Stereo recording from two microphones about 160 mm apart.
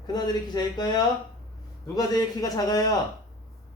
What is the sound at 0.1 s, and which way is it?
Speech, 25° left (ahead or behind).